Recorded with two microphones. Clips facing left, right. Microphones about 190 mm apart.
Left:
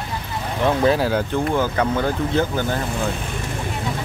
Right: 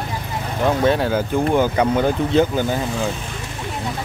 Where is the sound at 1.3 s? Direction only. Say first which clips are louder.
Right 6 dB; 15° right (ahead or behind).